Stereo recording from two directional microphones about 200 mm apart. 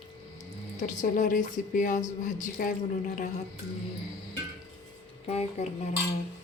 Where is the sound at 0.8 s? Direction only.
40° left (ahead or behind).